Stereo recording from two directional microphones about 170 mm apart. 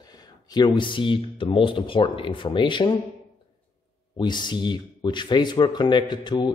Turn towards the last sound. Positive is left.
turn(degrees=25)  # may be behind; listen again after turning